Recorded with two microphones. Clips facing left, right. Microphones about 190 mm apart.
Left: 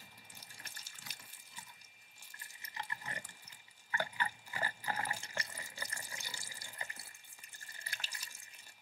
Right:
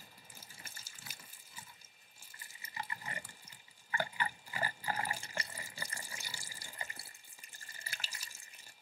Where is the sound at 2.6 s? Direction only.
10° right (ahead or behind).